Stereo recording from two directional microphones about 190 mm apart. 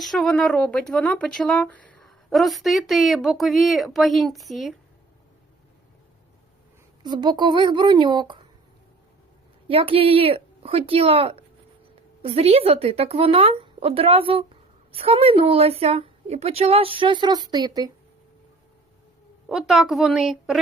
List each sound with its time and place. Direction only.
0.0 s speech: centre (ahead or behind)
7.0 s a woman's voice: 25° right (ahead or behind)
9.6 s a woman's voice: 30° right (ahead or behind)
19.5 s speech: centre (ahead or behind)